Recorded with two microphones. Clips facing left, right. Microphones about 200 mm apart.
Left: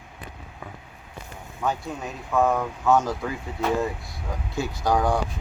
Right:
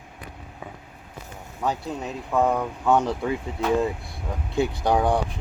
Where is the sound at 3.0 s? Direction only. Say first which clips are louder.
Right 3 dB; 30° right (ahead or behind).